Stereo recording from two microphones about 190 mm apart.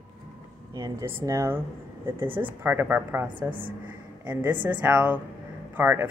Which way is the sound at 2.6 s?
10° right (ahead or behind).